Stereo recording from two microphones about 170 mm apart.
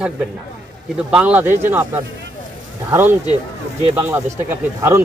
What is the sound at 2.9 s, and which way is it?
Speech, 10° right (ahead or behind).